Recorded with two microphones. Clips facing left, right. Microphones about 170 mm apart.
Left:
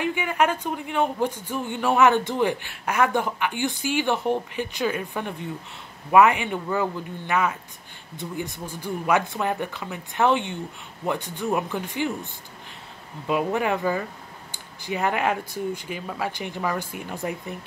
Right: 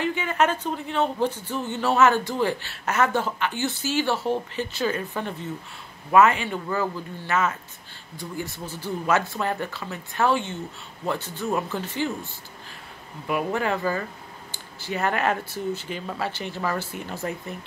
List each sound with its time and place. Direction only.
0.0 s speech: 15° left (ahead or behind)
13.4 s speech: 15° left (ahead or behind)